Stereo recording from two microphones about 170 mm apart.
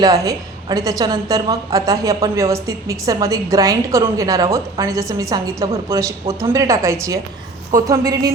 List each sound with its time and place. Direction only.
0.0 s a woman's voice: 20° right (ahead or behind)